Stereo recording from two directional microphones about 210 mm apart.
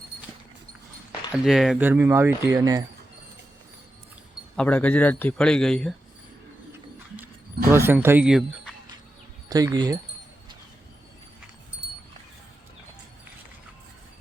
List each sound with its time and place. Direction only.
1.3 s speech: centre (ahead or behind)
4.5 s a man's voice: 5° left (ahead or behind)
7.7 s speech: 10° right (ahead or behind)
9.5 s speech: 15° right (ahead or behind)